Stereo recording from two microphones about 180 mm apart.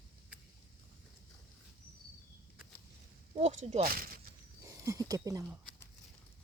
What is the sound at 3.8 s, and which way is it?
Speech, 55° right (ahead or behind).